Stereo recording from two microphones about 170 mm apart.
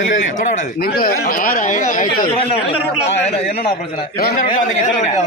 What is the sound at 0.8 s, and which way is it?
Speech, 60° left (ahead or behind).